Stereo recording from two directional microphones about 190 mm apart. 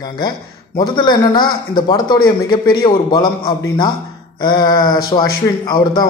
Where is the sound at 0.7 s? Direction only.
20° left (ahead or behind).